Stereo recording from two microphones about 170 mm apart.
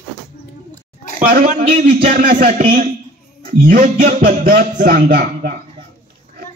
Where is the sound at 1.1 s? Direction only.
55° right (ahead or behind).